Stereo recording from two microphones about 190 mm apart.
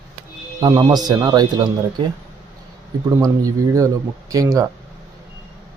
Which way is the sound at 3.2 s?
20° right (ahead or behind).